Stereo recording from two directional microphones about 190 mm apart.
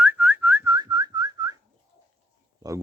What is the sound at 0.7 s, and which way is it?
Whistling, 20° right (ahead or behind).